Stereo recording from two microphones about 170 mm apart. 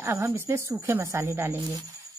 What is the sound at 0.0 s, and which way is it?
Speech, 15° right (ahead or behind).